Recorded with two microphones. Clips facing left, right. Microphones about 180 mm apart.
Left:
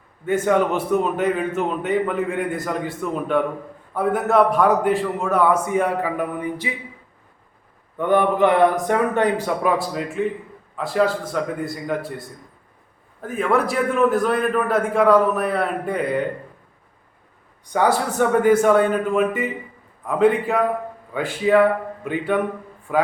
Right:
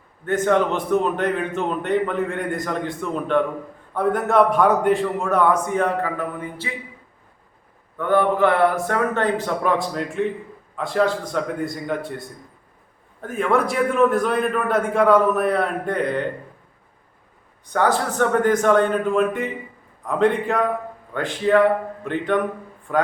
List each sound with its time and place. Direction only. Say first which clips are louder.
0.3 s a man's voice: even; 10° left (ahead or behind)
7.9 s a man's voice: left 1 dB; 20° left (ahead or behind); by 12.2 s centre (ahead or behind)
13.2 s a man's voice: even; centre (ahead or behind)
17.7 s a man's voice: left 1 dB; 10° left (ahead or behind)